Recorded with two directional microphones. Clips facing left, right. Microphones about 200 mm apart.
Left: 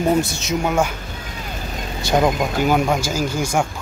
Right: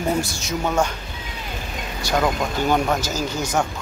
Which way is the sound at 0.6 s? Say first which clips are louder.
Left 1 dB; 10° left (ahead or behind).